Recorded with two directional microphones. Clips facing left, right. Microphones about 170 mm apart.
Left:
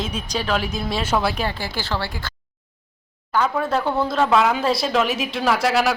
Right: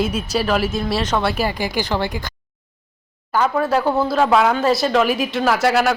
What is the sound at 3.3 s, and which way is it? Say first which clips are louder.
Speech: right 3 dB; 5° right (ahead or behind).